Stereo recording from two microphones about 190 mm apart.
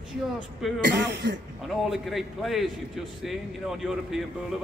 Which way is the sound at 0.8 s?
60° right (ahead or behind).